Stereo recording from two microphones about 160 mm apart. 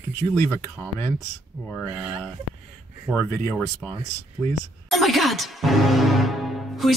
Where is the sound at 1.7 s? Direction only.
Centre (ahead or behind).